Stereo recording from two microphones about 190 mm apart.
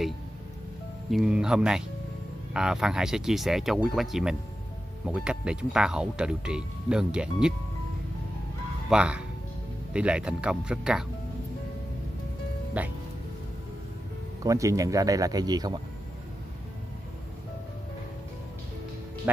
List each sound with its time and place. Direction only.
1.1 s speech: 5° right (ahead or behind)
8.8 s speech: 5° right (ahead or behind)
12.7 s speech: 5° right (ahead or behind)
14.4 s speech: 15° right (ahead or behind)
19.3 s music: 10° right (ahead or behind)